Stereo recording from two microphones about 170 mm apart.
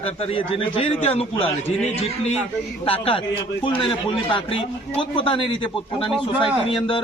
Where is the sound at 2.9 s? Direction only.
35° left (ahead or behind).